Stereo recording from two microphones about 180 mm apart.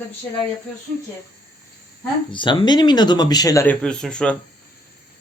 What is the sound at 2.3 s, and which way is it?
Speech, 25° left (ahead or behind).